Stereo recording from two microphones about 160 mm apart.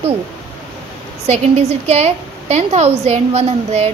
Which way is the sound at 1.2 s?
45° right (ahead or behind).